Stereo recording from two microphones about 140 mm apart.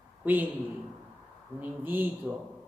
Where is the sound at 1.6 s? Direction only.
15° right (ahead or behind).